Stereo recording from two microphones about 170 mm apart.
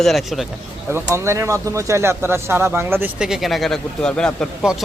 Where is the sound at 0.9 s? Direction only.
15° right (ahead or behind).